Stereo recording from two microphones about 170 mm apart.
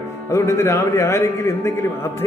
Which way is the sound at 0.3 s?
15° left (ahead or behind).